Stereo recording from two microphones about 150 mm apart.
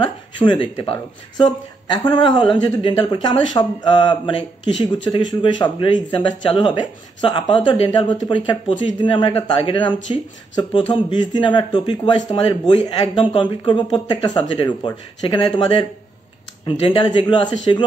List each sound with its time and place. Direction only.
0.0 s speech: 30° left (ahead or behind)
16.6 s speech: 40° left (ahead or behind)